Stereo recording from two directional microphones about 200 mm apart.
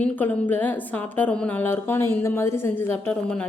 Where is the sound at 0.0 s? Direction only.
10° left (ahead or behind).